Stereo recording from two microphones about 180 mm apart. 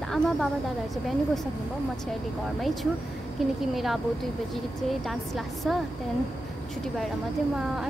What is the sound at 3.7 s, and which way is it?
Speech, centre (ahead or behind).